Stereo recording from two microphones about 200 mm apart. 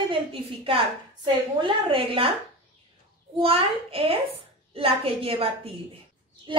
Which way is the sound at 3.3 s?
30° right (ahead or behind).